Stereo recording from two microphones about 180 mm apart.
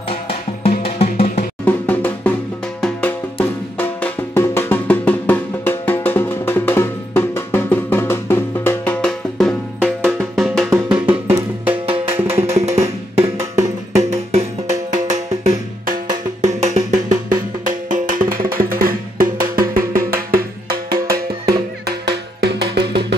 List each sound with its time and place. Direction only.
0.1 s music: 35° left (ahead or behind)
1.6 s music: 10° left (ahead or behind); by 13.7 s 15° right (ahead or behind)
13.9 s music: 40° right (ahead or behind)
16.9 s music: 20° right (ahead or behind)
17.8 s music: 45° right (ahead or behind)
21.8 s music: 65° right (ahead or behind)